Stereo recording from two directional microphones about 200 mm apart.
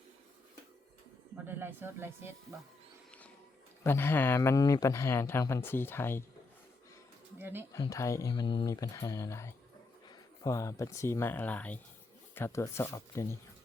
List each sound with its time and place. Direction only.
1.5 s speech: 10° right (ahead or behind)
3.8 s speech: 10° left (ahead or behind)
7.3 s speech: 10° right (ahead or behind)
7.7 s speech: 15° left (ahead or behind)